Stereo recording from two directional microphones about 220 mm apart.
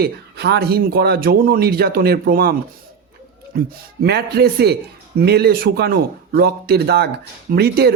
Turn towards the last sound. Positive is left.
turn(degrees=-45)  # may be behind; listen again after turning